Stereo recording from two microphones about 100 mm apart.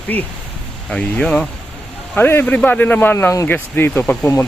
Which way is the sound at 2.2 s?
20° left (ahead or behind).